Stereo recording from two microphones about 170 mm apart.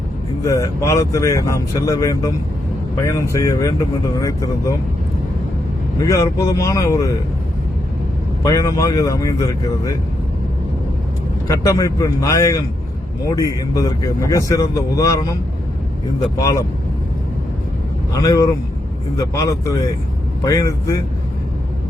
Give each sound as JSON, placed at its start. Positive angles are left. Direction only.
{"t": 0.4, "sound": "a man's voice", "side_deg": 20}
{"t": 6.0, "sound": "speech", "side_deg": 20}
{"t": 8.4, "sound": "a man's voice", "side_deg": 20}
{"t": 11.4, "sound": "a man's voice", "side_deg": 15}
{"t": 16.4, "sound": "speech", "side_deg": 20}
{"t": 18.1, "sound": "a man's voice", "side_deg": 20}